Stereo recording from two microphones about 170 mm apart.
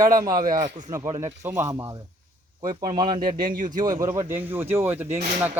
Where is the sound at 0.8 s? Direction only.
20° right (ahead or behind).